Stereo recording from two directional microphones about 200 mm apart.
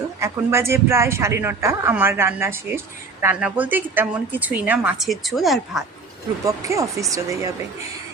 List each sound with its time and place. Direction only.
0.2 s speech: 15° right (ahead or behind)
6.4 s speech: 15° right (ahead or behind)